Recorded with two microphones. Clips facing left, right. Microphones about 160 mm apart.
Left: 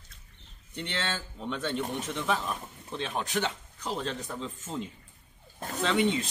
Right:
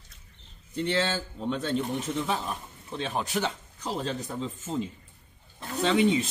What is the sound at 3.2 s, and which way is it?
Speech, 10° right (ahead or behind).